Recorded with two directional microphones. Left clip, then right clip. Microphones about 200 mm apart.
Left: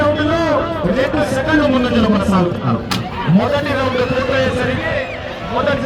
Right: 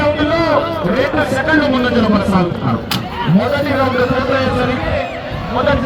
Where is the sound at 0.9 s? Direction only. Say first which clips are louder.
Right 2 dB; 10° left (ahead or behind).